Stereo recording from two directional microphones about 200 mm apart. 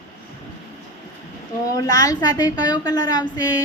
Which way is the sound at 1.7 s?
15° left (ahead or behind).